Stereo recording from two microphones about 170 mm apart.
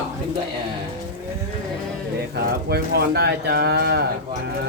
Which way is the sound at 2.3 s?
70° right (ahead or behind).